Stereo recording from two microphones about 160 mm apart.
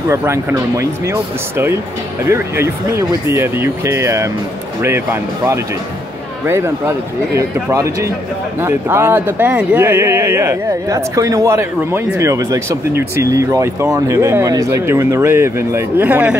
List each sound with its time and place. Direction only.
0.1 s speech: 15° right (ahead or behind)